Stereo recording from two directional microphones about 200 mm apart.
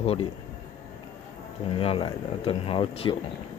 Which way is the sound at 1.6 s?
30° left (ahead or behind).